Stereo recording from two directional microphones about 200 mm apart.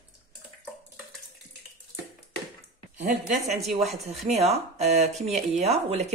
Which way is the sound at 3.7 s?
35° right (ahead or behind).